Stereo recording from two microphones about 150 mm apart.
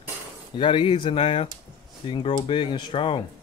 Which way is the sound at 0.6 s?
35° left (ahead or behind).